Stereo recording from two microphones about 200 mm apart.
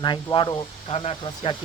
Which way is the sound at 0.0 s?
25° left (ahead or behind).